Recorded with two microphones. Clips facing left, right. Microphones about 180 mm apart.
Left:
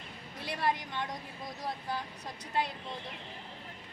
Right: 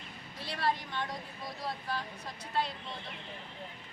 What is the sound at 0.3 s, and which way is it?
Speech, 15° left (ahead or behind).